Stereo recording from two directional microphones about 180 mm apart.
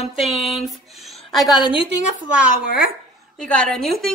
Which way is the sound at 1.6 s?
30° left (ahead or behind).